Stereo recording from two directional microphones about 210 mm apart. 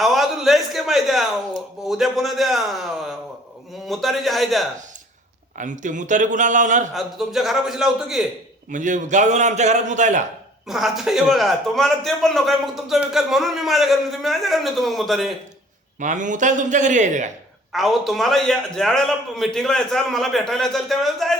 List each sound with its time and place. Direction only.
0.0 s a sound: centre (ahead or behind)
1.8 s a man's voice: centre (ahead or behind)
5.5 s a man's voice: 35° right (ahead or behind)
6.9 s a man's voice: centre (ahead or behind)
8.7 s a man's voice: 35° right (ahead or behind)
10.7 s a man's voice: centre (ahead or behind)
16.0 s a man's voice: 35° right (ahead or behind)
17.7 s a man's voice: centre (ahead or behind)